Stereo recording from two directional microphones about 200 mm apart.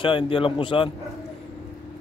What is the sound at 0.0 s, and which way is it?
Speech, 25° left (ahead or behind).